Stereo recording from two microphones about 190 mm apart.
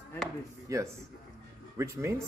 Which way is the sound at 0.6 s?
15° right (ahead or behind).